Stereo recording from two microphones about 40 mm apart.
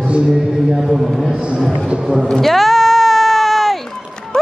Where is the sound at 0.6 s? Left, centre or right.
Centre.